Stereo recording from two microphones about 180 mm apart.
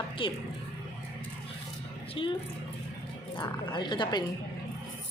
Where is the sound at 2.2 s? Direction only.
30° left (ahead or behind).